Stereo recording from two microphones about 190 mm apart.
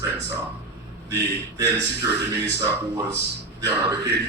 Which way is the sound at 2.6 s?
20° right (ahead or behind).